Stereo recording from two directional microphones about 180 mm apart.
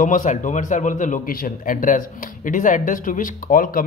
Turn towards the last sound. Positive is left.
turn(degrees=50)  # may be behind; listen again after turning